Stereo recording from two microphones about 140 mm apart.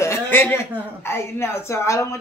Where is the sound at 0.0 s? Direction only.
20° left (ahead or behind).